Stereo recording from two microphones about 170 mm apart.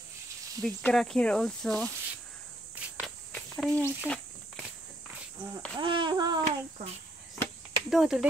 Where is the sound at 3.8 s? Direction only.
5° left (ahead or behind).